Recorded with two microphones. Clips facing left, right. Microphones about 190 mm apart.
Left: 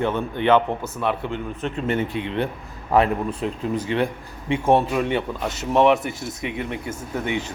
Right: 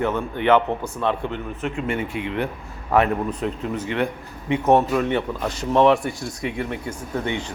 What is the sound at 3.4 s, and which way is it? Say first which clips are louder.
Speech: left 1 dB; 30° left (ahead or behind).